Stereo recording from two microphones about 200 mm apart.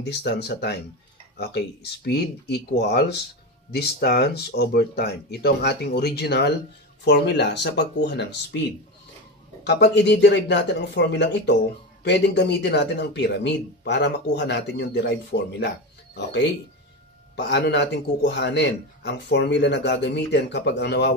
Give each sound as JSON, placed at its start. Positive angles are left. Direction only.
{"t": 0.0, "sound": "a man's voice", "side_deg": 55}
{"t": 9.7, "sound": "a man's voice", "side_deg": 60}